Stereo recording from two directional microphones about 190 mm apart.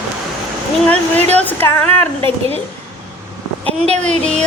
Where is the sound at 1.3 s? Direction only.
10° left (ahead or behind).